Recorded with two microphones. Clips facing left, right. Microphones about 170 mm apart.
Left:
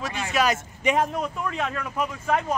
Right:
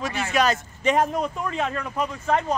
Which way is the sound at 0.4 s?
10° left (ahead or behind).